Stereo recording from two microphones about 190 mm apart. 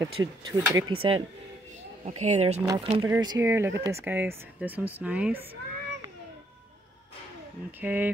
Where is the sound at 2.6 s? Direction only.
20° right (ahead or behind).